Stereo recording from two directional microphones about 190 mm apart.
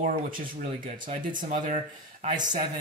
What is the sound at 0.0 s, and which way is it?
Speech, 45° right (ahead or behind).